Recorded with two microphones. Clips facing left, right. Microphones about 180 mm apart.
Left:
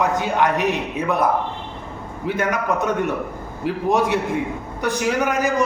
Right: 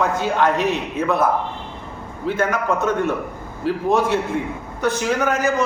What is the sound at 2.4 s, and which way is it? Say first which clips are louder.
Speech: right 1 dB; 15° left (ahead or behind).